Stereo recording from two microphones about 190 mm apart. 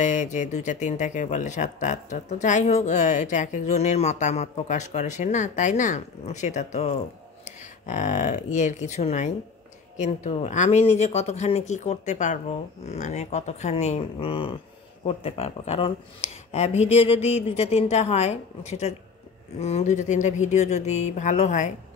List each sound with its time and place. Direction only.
0.0 s speech: 40° left (ahead or behind)